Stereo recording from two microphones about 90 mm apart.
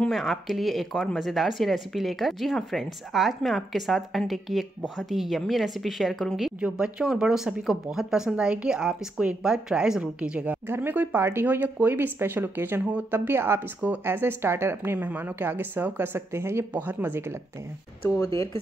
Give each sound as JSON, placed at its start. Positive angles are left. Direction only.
{"t": 0.1, "sound": "a woman's voice", "side_deg": 0}
{"t": 18.1, "sound": "speech", "side_deg": 30}